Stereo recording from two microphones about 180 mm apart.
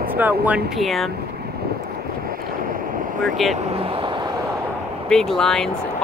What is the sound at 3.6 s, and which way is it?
Vehicle, 30° right (ahead or behind).